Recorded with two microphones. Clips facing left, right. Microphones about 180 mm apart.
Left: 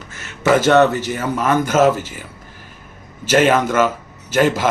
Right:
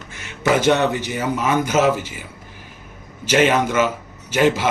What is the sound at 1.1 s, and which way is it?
Speech, 50° left (ahead or behind).